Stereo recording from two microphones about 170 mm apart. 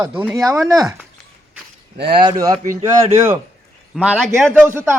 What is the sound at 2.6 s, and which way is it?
Speech, 50° right (ahead or behind).